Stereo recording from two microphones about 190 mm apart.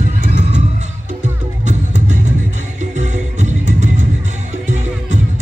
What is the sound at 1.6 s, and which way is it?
Music, 40° right (ahead or behind).